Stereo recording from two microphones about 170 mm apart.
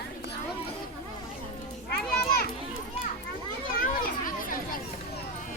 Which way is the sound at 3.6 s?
55° left (ahead or behind).